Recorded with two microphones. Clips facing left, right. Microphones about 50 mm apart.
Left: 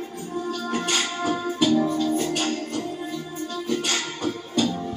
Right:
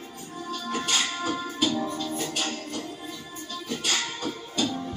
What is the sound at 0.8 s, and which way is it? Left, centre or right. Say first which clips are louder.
Music: left 2 dB; left.